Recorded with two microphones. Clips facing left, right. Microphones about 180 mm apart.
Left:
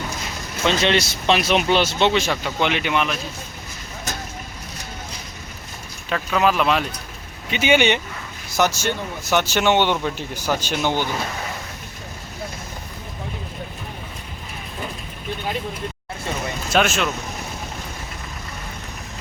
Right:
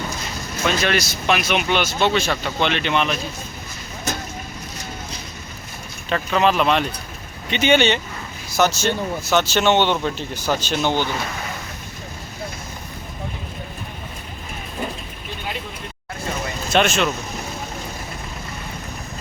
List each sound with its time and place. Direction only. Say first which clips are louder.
0.6 s speech: left 2 dB; 25° left (ahead or behind); by 3.2 s 5° left (ahead or behind)
6.1 s speech: right 1 dB; 5° left (ahead or behind)
16.7 s speech: right 1 dB; 5° left (ahead or behind)